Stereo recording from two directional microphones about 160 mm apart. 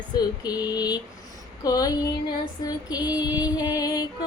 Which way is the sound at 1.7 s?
25° left (ahead or behind).